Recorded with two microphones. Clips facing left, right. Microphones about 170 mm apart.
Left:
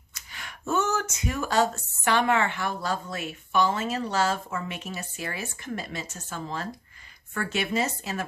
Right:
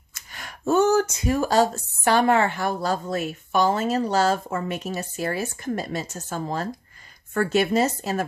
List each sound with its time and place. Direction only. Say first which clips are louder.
0.1 s speech: right 3 dB; 45° right (ahead or behind)